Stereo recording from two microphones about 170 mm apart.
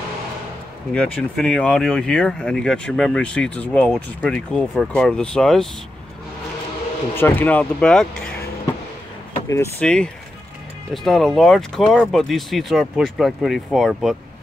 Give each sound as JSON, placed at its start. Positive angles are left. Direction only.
{"t": 0.9, "sound": "speech", "side_deg": 5}
{"t": 7.2, "sound": "speech", "side_deg": 10}
{"t": 9.5, "sound": "speech", "side_deg": 15}
{"t": 9.8, "sound": "speech", "side_deg": 5}